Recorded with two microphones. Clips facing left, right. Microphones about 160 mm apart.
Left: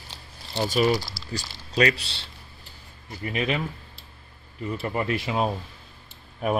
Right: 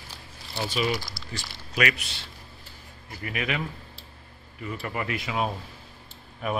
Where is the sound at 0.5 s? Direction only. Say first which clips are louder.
Left 5 dB; 40° left (ahead or behind).